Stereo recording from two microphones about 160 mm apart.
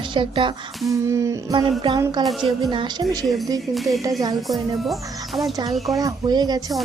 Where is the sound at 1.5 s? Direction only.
30° right (ahead or behind).